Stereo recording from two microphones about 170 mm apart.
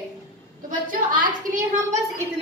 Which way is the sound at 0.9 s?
55° right (ahead or behind).